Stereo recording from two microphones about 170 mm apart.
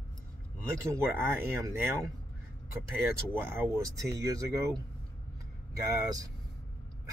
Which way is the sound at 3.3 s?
15° right (ahead or behind).